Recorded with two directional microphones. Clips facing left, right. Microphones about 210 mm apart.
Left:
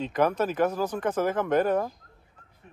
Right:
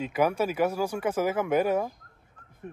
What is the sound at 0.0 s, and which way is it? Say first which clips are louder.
Speech: left 1 dB; 10° right (ahead or behind).